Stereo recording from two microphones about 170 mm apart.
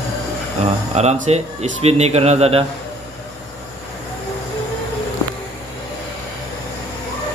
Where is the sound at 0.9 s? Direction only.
40° right (ahead or behind).